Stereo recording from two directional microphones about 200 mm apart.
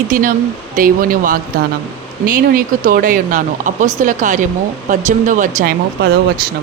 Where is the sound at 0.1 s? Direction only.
45° right (ahead or behind).